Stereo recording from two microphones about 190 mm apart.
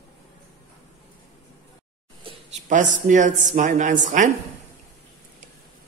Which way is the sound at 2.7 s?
40° right (ahead or behind).